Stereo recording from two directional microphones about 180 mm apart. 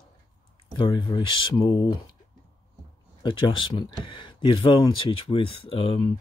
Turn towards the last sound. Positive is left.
turn(degrees=30)  # may be behind; listen again after turning